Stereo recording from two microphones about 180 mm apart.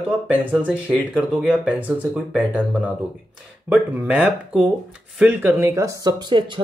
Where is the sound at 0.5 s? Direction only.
10° right (ahead or behind).